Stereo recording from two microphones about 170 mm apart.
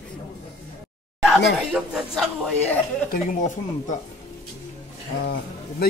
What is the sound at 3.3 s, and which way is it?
Speech, 45° left (ahead or behind).